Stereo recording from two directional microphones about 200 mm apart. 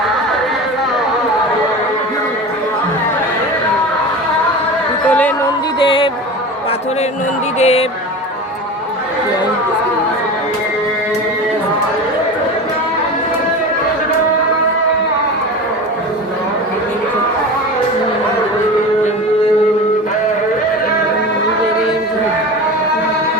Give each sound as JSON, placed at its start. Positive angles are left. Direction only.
{"t": 5.0, "sound": "music", "side_deg": 5}
{"t": 5.8, "sound": "music", "side_deg": 25}
{"t": 7.6, "sound": "speech", "side_deg": 30}